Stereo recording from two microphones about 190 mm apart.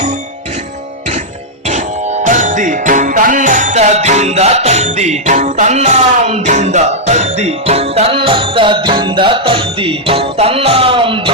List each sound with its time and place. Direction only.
1.6 s music: 35° right (ahead or behind)